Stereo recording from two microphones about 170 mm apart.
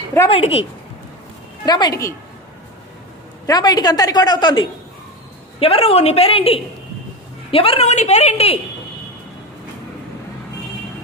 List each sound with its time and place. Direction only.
0.3 s a woman's voice: 35° left (ahead or behind)
1.6 s a woman's voice: 25° left (ahead or behind)
3.4 s a woman's voice: 25° left (ahead or behind); by 8.5 s 40° left (ahead or behind)